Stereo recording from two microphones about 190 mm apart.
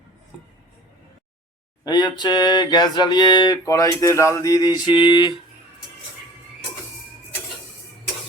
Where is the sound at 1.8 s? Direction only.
25° left (ahead or behind).